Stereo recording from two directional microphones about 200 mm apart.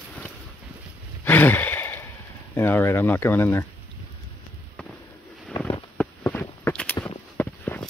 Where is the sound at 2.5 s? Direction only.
10° left (ahead or behind).